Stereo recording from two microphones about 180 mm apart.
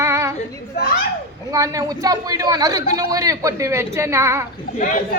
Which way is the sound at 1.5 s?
20° right (ahead or behind).